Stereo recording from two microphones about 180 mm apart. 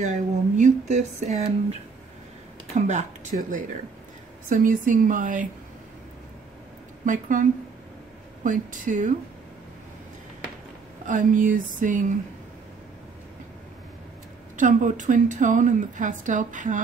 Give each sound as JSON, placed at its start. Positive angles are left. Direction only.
{"t": 0.0, "sound": "a woman's voice", "side_deg": -40}
{"t": 7.1, "sound": "a woman's voice", "side_deg": -45}
{"t": 8.5, "sound": "a woman's voice", "side_deg": -45}
{"t": 11.1, "sound": "a woman's voice", "side_deg": -45}
{"t": 14.6, "sound": "a woman's voice", "side_deg": -45}